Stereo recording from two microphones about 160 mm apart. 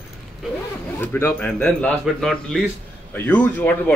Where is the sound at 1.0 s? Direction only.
10° left (ahead or behind).